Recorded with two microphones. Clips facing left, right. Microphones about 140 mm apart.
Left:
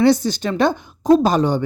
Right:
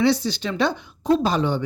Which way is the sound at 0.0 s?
45° left (ahead or behind).